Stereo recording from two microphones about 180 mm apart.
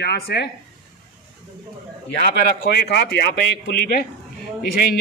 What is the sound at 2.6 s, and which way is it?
Speech, 65° left (ahead or behind).